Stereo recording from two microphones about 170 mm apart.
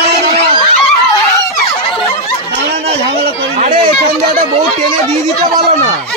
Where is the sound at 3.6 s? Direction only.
40° right (ahead or behind).